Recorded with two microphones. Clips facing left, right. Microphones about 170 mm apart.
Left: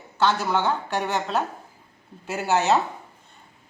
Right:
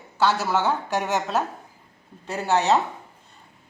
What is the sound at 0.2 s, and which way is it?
A woman's voice, 5° right (ahead or behind).